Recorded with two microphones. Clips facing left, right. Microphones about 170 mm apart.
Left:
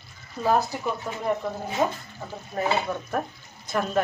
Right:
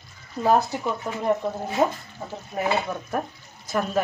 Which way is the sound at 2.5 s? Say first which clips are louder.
Even; 20° right (ahead or behind).